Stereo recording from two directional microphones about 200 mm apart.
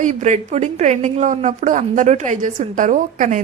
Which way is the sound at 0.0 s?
40° right (ahead or behind).